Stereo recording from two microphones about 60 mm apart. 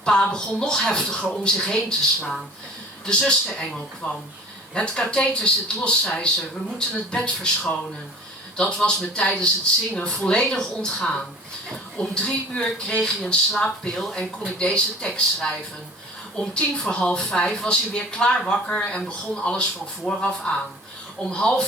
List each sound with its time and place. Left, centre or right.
0.0 s speech: centre